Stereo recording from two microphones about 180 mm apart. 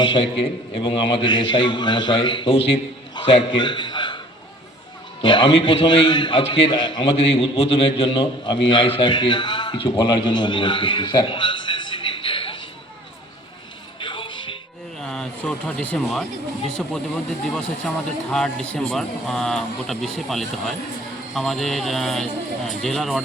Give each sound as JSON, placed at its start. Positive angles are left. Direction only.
{"t": 0.0, "sound": "a man's voice", "side_deg": 30}
{"t": 5.2, "sound": "a man's voice", "side_deg": 30}
{"t": 14.0, "sound": "music", "side_deg": 25}
{"t": 15.0, "sound": "speech", "side_deg": 5}
{"t": 17.5, "sound": "a man's voice", "side_deg": 5}